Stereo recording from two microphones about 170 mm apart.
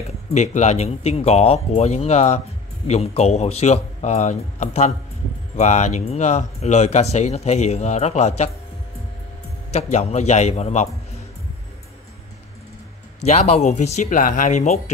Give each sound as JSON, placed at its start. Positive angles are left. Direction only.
{"t": 0.3, "sound": "speech", "side_deg": 40}
{"t": 9.7, "sound": "speech", "side_deg": 40}
{"t": 13.2, "sound": "speech", "side_deg": 40}